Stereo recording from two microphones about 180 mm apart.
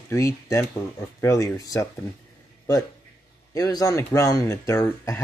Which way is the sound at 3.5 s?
20° left (ahead or behind).